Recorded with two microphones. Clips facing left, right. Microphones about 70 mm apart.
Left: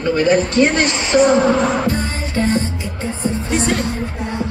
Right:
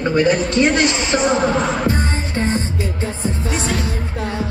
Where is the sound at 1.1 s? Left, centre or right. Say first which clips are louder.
Left 7 dB; right.